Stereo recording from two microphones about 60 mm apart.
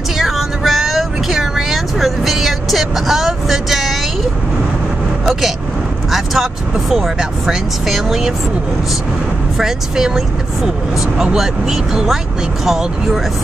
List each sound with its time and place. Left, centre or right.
0.2 s vehicle: centre
5.2 s vehicle: centre
6.1 s speech: centre
9.6 s speech: centre